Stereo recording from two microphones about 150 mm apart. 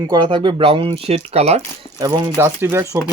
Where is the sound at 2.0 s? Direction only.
25° right (ahead or behind).